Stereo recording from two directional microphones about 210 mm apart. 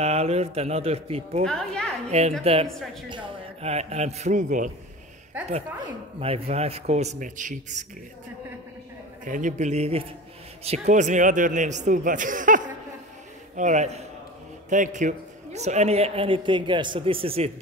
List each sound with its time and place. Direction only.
0.0 s a man's voice: 30° right (ahead or behind)
1.4 s a woman's voice: 5° left (ahead or behind)
2.0 s a man's voice: 30° right (ahead or behind)
5.8 s speech: 30° right (ahead or behind)
9.2 s a man's voice: 35° right (ahead or behind)